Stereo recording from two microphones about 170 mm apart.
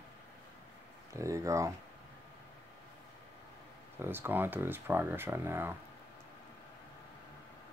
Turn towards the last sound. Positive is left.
turn(degrees=-15)  # may be behind; listen again after turning